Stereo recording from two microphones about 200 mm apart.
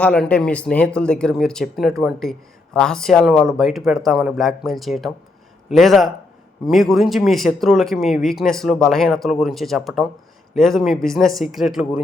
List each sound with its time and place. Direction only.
0.0 s speech: 5° left (ahead or behind)